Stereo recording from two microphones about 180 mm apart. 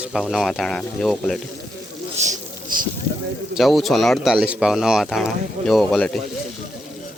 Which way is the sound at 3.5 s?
Centre (ahead or behind).